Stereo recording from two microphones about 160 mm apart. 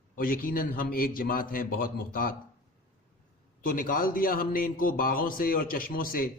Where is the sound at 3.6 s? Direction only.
60° left (ahead or behind).